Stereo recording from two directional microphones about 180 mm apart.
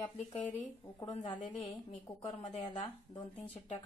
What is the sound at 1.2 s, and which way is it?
Speech, 25° left (ahead or behind).